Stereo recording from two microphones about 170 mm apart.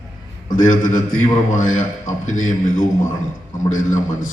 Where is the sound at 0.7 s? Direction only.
50° left (ahead or behind).